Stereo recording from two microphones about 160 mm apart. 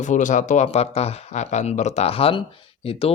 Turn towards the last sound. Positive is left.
turn(degrees=40)  # may be behind; listen again after turning